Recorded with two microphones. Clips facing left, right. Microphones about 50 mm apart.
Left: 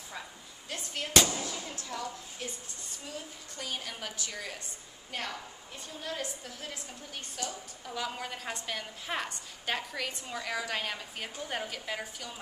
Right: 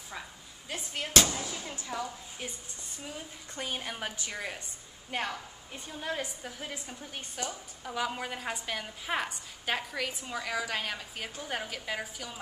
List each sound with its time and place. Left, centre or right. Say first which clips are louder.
0.7 s a sound: right 1 dB; centre
1.3 s speech: even; centre
3.5 s a woman's voice: right 3 dB; right; by 12.4 s centre